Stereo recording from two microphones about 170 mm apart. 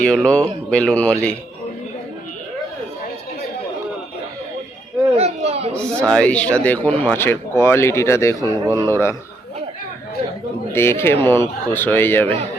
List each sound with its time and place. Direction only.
0.0 s speech: 5° left (ahead or behind)
5.1 s a sound: 40° right (ahead or behind)
5.7 s speech: 5° left (ahead or behind)
10.7 s speech: 15° left (ahead or behind)